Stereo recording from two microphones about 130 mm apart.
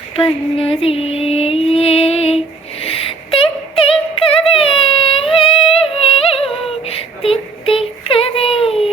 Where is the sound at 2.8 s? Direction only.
45° left (ahead or behind).